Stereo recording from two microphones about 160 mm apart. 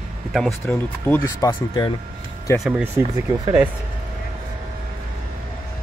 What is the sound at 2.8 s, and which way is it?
Speech, 15° right (ahead or behind).